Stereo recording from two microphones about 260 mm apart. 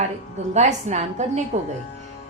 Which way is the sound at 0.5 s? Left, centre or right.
Right.